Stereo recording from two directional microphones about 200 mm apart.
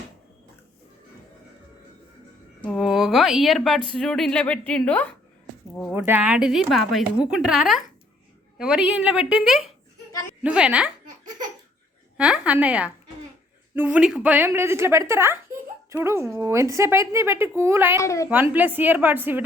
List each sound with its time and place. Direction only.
2.6 s speech: centre (ahead or behind)
5.9 s speech: 10° right (ahead or behind)
12.1 s a woman's voice: 5° right (ahead or behind)
17.9 s a woman's voice: 15° left (ahead or behind)
18.5 s speech: 10° right (ahead or behind)